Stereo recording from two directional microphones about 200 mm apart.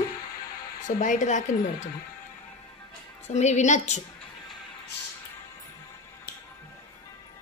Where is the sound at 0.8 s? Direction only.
40° left (ahead or behind).